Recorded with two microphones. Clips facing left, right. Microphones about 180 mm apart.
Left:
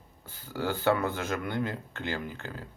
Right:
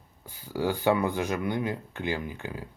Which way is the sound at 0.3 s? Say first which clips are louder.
Right 3 dB; 15° right (ahead or behind).